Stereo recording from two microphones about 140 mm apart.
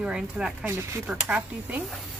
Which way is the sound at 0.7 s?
20° right (ahead or behind).